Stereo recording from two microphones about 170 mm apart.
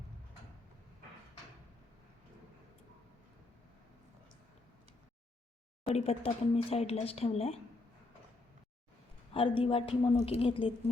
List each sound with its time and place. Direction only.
5.8 s speech: 35° left (ahead or behind)
9.3 s speech: 30° left (ahead or behind)